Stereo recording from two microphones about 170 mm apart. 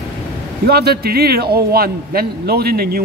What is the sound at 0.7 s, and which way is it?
A man's voice, 65° right (ahead or behind).